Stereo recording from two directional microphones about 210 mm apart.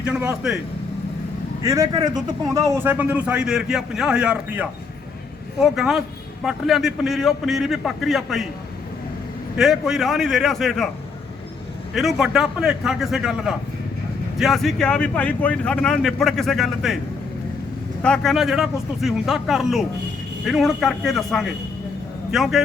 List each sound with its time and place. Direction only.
0.0 s speech: 5° right (ahead or behind)
1.6 s a man's voice: 15° right (ahead or behind); by 8.4 s centre (ahead or behind)
9.6 s speech: centre (ahead or behind)
11.9 s speech: centre (ahead or behind)
18.0 s speech: 5° left (ahead or behind)